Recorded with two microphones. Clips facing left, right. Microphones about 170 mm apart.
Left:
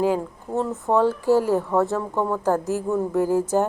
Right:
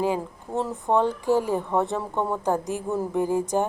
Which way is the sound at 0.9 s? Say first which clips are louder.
Left 2 dB; 20° right (ahead or behind).